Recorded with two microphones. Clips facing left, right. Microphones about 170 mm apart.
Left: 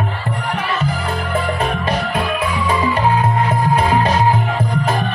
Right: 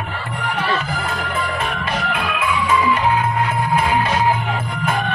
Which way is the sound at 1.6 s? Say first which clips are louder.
Left 4 dB; 40° left (ahead or behind).